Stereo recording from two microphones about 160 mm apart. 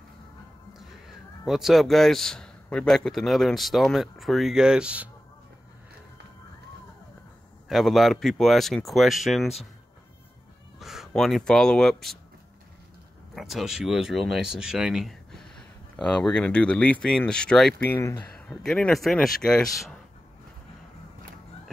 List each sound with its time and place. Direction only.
0.7 s speech: centre (ahead or behind)
7.6 s speech: centre (ahead or behind)
10.8 s speech: centre (ahead or behind)
13.3 s speech: centre (ahead or behind)
17.8 s speech: 20° left (ahead or behind)
18.3 s speech: 5° left (ahead or behind)